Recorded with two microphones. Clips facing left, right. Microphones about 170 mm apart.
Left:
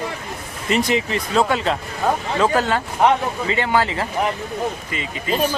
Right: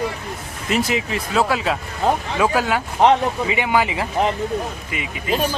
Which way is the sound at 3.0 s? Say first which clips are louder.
Right 2 dB; 25° right (ahead or behind).